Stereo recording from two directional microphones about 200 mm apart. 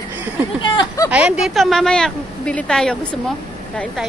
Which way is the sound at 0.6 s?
20° left (ahead or behind).